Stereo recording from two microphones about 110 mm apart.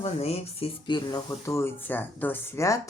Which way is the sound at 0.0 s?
65° left (ahead or behind).